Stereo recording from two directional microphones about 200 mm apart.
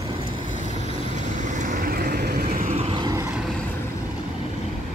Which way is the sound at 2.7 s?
25° right (ahead or behind).